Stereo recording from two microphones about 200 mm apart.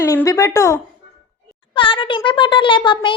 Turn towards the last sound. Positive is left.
turn(degrees=25)  # may be behind; listen again after turning